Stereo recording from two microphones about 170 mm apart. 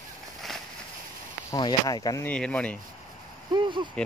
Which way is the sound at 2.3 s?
5° left (ahead or behind).